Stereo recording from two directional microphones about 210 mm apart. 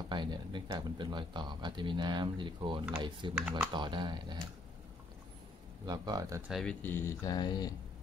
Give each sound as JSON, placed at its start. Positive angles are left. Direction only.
{"t": 0.1, "sound": "speech", "side_deg": -20}
{"t": 3.3, "sound": "speech", "side_deg": -5}
{"t": 3.7, "sound": "speech", "side_deg": -20}
{"t": 5.9, "sound": "speech", "side_deg": -20}
{"t": 6.5, "sound": "speech", "side_deg": 5}